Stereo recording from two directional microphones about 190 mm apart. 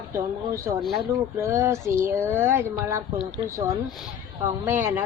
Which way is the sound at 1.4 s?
15° right (ahead or behind).